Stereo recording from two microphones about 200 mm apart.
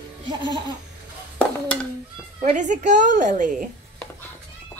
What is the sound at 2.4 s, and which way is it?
A woman's voice, 35° right (ahead or behind).